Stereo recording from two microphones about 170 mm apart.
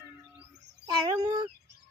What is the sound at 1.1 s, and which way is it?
Speech, 20° right (ahead or behind).